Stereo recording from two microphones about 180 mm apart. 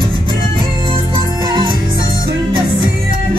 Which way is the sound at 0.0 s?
30° right (ahead or behind).